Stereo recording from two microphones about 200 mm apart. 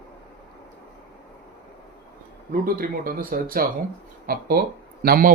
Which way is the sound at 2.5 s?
45° right (ahead or behind).